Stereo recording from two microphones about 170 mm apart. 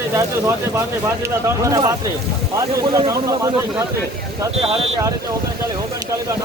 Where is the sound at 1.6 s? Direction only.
20° right (ahead or behind).